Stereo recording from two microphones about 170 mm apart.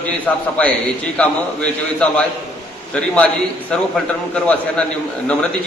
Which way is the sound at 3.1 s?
5° left (ahead or behind).